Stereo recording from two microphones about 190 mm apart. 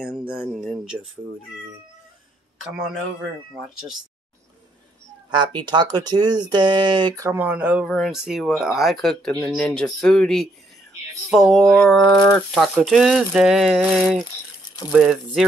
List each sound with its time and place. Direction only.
0.0 s speech: 5° right (ahead or behind)
2.6 s speech: 5° right (ahead or behind)
5.3 s speech: 25° right (ahead or behind); by 12.0 s centre (ahead or behind)
12.0 s speech: 15° left (ahead or behind)
12.5 s speech: centre (ahead or behind)